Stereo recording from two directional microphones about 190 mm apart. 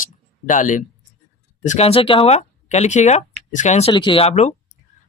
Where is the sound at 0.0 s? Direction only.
40° left (ahead or behind).